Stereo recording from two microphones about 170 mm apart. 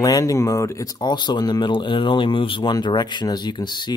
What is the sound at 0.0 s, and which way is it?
Speech, 20° left (ahead or behind).